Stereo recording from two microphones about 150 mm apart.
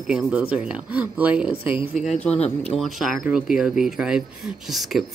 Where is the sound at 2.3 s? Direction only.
45° left (ahead or behind).